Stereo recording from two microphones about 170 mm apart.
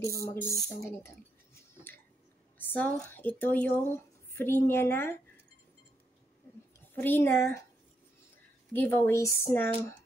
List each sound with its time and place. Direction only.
0.2 s speech: 15° left (ahead or behind)
2.6 s speech: 10° left (ahead or behind)
6.9 s speech: 10° left (ahead or behind)
8.7 s speech: 10° left (ahead or behind)